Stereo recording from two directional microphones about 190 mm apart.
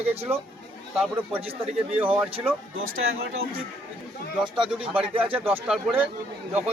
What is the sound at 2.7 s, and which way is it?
Speech, 90° right.